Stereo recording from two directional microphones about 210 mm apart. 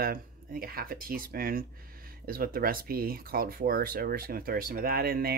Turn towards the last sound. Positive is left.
turn(degrees=-45)  # may be behind; listen again after turning